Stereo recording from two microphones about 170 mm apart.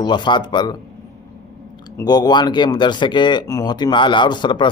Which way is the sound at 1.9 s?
25° left (ahead or behind).